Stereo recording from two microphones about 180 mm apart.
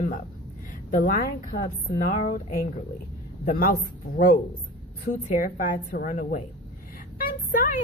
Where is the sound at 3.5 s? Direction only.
55° left (ahead or behind).